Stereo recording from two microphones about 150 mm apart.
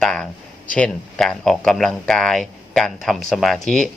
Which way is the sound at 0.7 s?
5° left (ahead or behind).